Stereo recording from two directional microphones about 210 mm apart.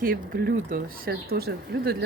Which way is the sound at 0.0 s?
45° right (ahead or behind).